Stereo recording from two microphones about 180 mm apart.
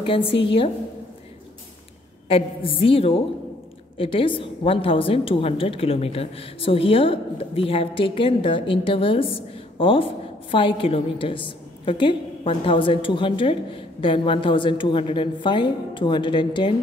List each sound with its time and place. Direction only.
0.0 s a woman's voice: 30° left (ahead or behind)
2.2 s a woman's voice: 30° left (ahead or behind)